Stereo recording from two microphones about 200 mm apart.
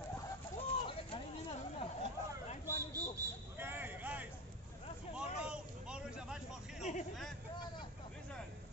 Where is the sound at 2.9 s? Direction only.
15° right (ahead or behind).